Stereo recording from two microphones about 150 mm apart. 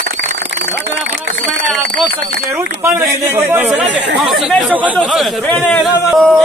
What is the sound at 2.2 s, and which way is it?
Speech, 80° right.